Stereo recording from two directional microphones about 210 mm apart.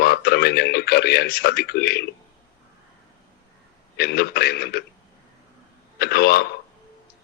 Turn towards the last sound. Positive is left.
turn(degrees=50)  # may be behind; listen again after turning